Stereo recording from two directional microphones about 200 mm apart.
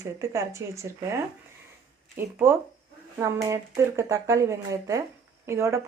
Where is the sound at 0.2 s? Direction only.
15° right (ahead or behind).